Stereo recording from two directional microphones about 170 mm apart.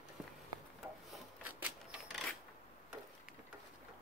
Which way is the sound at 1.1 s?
5° right (ahead or behind).